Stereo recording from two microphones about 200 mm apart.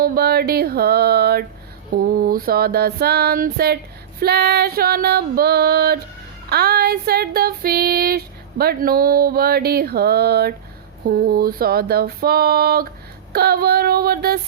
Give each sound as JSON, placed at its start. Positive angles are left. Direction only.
{"t": 0.0, "sound": "child singing", "side_deg": -50}